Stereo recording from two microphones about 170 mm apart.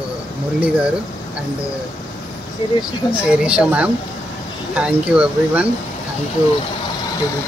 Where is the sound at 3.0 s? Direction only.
30° left (ahead or behind).